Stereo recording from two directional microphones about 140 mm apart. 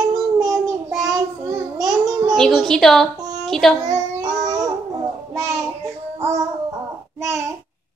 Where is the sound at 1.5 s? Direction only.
30° right (ahead or behind).